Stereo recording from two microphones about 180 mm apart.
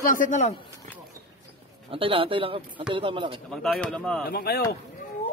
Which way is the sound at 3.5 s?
5° left (ahead or behind).